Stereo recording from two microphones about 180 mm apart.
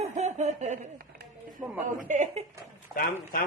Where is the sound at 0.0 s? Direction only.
40° right (ahead or behind).